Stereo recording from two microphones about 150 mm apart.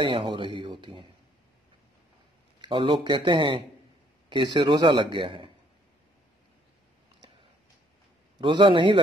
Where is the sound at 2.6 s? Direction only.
35° right (ahead or behind).